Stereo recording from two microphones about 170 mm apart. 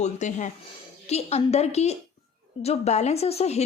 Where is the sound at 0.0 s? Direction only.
45° left (ahead or behind).